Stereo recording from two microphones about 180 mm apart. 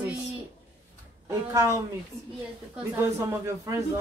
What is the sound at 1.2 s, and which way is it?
Speech, 15° right (ahead or behind).